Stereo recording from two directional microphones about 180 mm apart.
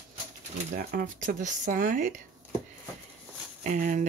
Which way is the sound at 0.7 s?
50° right (ahead or behind).